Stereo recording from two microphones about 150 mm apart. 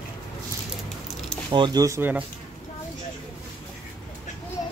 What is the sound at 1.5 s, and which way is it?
Speech, 30° right (ahead or behind).